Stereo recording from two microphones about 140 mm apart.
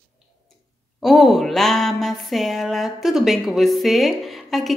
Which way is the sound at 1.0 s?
Centre (ahead or behind).